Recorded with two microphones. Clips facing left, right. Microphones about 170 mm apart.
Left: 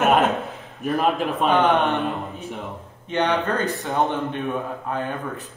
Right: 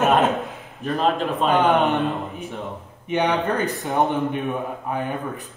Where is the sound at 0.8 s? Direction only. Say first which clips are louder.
Even; 10° left (ahead or behind).